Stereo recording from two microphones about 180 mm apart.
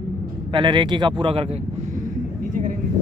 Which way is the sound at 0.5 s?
25° right (ahead or behind).